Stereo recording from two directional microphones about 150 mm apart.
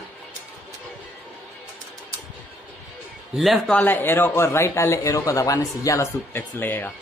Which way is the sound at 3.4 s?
Centre (ahead or behind).